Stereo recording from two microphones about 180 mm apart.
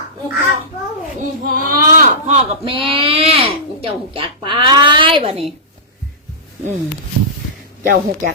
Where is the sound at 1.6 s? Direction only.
45° right (ahead or behind).